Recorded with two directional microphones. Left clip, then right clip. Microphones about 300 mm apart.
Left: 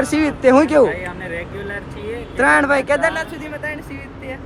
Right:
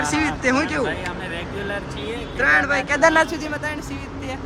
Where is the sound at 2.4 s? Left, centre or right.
Centre.